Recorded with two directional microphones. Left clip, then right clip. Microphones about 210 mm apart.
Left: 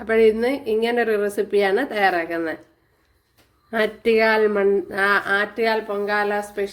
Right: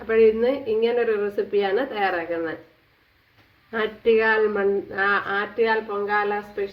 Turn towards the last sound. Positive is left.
turn(degrees=40)  # may be behind; listen again after turning